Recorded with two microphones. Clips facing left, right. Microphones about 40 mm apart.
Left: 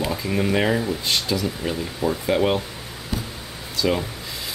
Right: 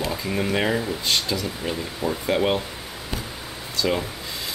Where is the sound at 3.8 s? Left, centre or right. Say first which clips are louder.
Left 1 dB; centre.